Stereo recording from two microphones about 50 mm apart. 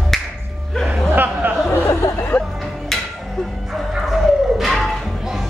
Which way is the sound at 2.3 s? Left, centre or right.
Left.